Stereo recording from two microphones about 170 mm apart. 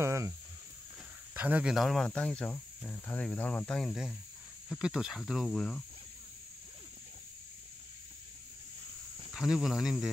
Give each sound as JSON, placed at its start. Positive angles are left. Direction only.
{"t": 0.0, "sound": "speech", "side_deg": -15}
{"t": 1.3, "sound": "speech", "side_deg": -10}
{"t": 9.3, "sound": "speech", "side_deg": -5}